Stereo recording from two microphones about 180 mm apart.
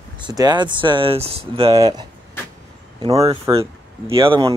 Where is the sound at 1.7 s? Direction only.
20° right (ahead or behind).